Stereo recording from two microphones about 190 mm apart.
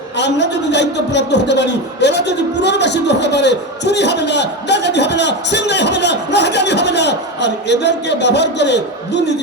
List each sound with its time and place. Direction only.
0.2 s a man's voice: 65° left (ahead or behind)